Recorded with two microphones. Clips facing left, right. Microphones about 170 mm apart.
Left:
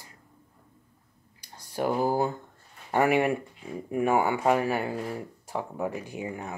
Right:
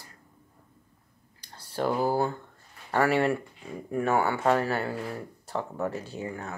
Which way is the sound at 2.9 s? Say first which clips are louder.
Left 1 dB; 15° left (ahead or behind).